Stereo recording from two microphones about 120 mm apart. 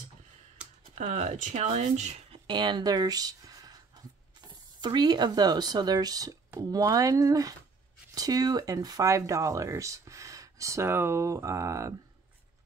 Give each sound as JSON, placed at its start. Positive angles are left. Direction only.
{"t": 0.9, "sound": "speech", "side_deg": -70}
{"t": 2.3, "sound": "speech", "side_deg": -40}